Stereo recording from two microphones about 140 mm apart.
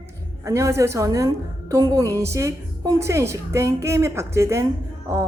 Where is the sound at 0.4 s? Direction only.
20° right (ahead or behind).